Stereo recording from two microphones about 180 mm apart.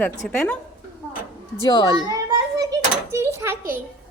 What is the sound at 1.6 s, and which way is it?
Speech, 25° left (ahead or behind).